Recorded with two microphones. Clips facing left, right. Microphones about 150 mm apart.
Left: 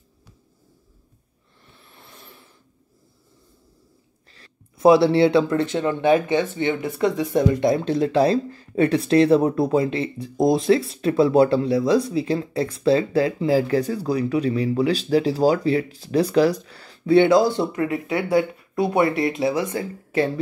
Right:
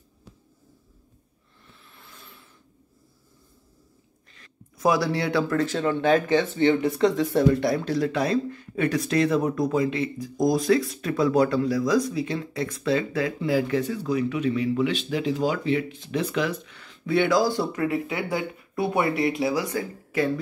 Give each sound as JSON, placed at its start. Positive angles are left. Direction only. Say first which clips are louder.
{"t": 1.8, "sound": "a sound", "louder": "left 3 dB", "side_deg": 30}
{"t": 4.3, "sound": "speech", "louder": "even", "side_deg": 30}
{"t": 18.9, "sound": "speech", "louder": "left 3 dB", "side_deg": -20}
{"t": 19.3, "sound": "speech", "louder": "left 3 dB", "side_deg": 25}